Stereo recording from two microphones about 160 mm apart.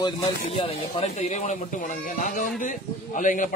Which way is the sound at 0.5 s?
40° left (ahead or behind).